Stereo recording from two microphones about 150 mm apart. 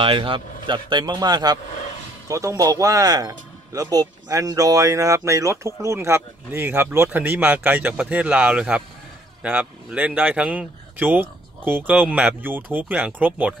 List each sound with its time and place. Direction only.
0.0 s speech: 35° right (ahead or behind); by 13.6 s 10° right (ahead or behind)